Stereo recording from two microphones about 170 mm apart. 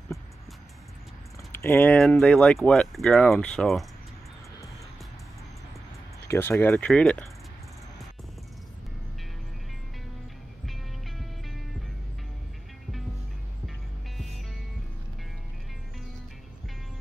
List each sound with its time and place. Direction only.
1.6 s speech: 10° left (ahead or behind)
6.2 s speech: 15° left (ahead or behind)
10.6 s music: centre (ahead or behind)